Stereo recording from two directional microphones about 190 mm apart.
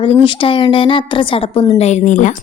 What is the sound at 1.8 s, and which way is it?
Speech, 35° left (ahead or behind).